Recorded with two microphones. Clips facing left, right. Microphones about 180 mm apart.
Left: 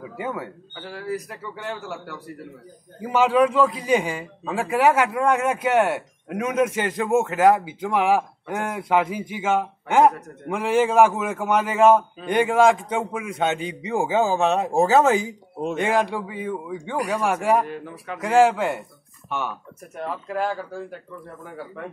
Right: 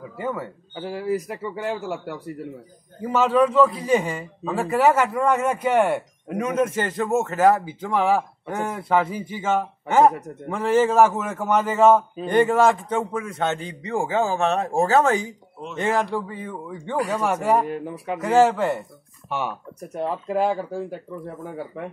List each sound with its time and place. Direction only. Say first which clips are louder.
0.2 s a man's voice: right 1 dB; 5° left (ahead or behind)
0.7 s a man's voice: right 5 dB; 10° right (ahead or behind)
3.0 s a man's voice: even; 5° left (ahead or behind)
7.3 s speech: even; centre (ahead or behind)
7.8 s a man's voice: even; 10° left (ahead or behind)
14.5 s a man's voice: left 1 dB; 5° left (ahead or behind)
20.0 s a man's voice: right 4 dB; 15° right (ahead or behind)